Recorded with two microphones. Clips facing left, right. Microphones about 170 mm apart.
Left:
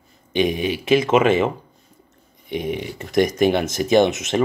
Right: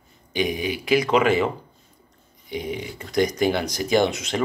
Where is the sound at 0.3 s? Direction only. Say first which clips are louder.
Left 4 dB; 25° left (ahead or behind).